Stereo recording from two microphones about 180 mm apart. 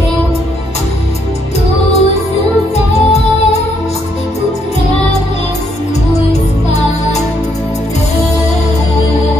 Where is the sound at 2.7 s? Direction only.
35° left (ahead or behind).